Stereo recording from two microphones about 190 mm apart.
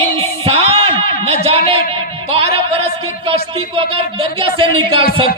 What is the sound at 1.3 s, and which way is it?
A man's voice, 30° right (ahead or behind).